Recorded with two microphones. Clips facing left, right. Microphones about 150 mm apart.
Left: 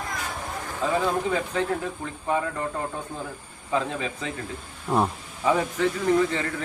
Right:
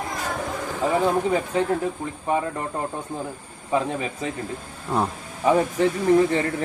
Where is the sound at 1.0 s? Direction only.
25° right (ahead or behind).